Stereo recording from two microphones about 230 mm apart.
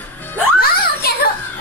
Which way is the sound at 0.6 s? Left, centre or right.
Left.